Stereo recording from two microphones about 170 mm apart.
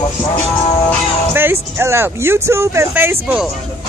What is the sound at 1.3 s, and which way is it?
Speech, 15° right (ahead or behind).